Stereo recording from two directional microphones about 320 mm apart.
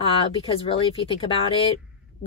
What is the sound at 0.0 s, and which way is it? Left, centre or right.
Speech, centre.